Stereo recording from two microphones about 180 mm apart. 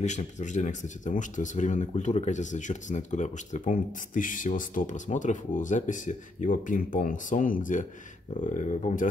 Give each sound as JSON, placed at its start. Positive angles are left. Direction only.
{"t": 0.0, "sound": "speech", "side_deg": 40}